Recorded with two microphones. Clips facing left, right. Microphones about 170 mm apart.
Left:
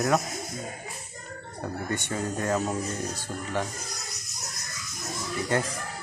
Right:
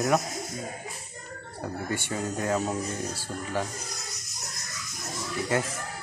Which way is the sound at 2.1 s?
5° right (ahead or behind).